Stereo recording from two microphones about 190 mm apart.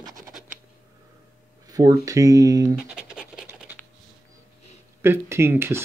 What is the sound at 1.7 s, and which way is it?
Speech, 20° right (ahead or behind).